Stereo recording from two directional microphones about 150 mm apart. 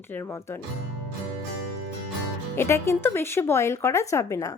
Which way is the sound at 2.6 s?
15° left (ahead or behind).